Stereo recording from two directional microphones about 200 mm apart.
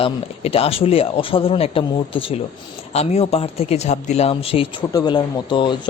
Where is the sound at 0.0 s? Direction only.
30° left (ahead or behind).